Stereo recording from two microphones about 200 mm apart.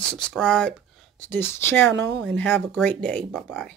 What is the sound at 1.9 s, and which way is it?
Speech, 65° right (ahead or behind).